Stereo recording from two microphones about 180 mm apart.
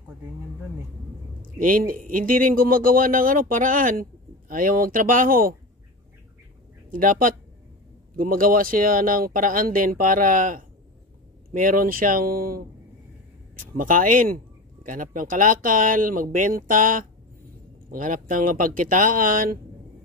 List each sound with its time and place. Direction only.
1.4 s speech: 50° right (ahead or behind)
6.9 s speech: 50° right (ahead or behind)